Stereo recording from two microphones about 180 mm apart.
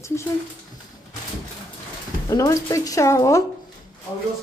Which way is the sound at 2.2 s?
20° left (ahead or behind).